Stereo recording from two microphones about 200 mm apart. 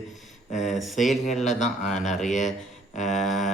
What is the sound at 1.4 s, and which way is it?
A man's voice, 35° left (ahead or behind).